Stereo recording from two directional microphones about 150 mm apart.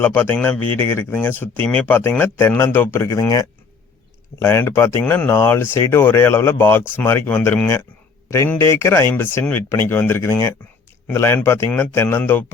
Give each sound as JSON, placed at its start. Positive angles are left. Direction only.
{"t": 0.0, "sound": "speech", "side_deg": 10}